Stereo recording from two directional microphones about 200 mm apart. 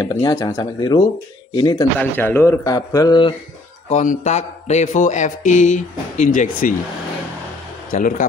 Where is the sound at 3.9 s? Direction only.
40° left (ahead or behind).